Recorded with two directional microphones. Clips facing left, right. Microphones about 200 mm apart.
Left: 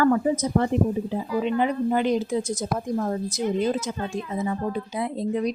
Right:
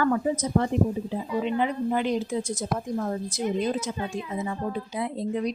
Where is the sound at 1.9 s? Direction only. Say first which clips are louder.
Left 3 dB; 45° left (ahead or behind).